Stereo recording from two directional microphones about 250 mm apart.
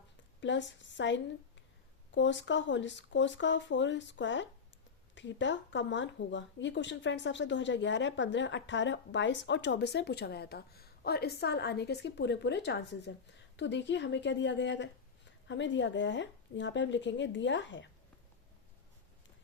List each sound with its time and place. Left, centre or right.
0.3 s a woman's voice: left